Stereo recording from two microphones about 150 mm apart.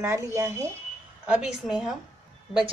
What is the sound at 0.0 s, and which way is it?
Speech, 20° right (ahead or behind).